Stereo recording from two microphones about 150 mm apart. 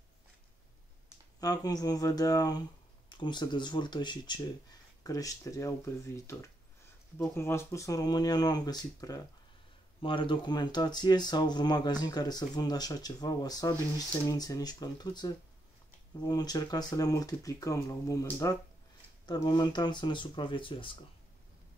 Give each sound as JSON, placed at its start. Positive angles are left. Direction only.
{"t": 1.4, "sound": "speech", "side_deg": 25}